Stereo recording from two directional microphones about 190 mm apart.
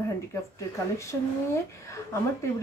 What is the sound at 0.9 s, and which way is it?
Speech, 15° left (ahead or behind).